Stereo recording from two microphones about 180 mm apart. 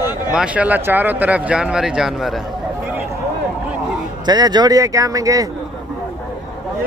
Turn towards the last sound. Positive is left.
turn(degrees=-20)  # may be behind; listen again after turning